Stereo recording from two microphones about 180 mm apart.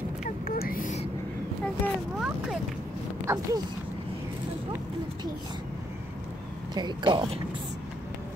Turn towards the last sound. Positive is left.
turn(degrees=-25)  # may be behind; listen again after turning